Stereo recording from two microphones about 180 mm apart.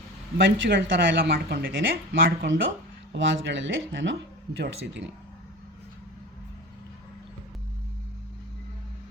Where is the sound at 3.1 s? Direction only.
90° right.